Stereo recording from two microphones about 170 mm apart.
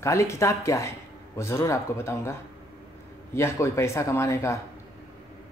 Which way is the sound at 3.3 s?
15° left (ahead or behind).